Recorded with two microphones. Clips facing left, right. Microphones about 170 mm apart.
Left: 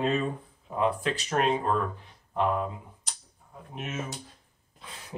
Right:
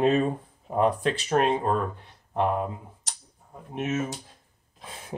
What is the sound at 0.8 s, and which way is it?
Speech, 40° right (ahead or behind).